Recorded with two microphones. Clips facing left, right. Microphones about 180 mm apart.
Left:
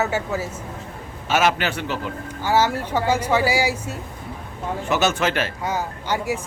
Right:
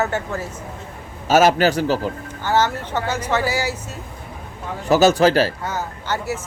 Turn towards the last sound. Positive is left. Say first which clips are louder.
# left 1 dB
turn(degrees=15)  # may be behind; listen again after turning